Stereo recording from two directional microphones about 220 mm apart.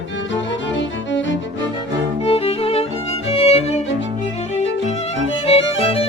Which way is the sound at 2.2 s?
25° left (ahead or behind).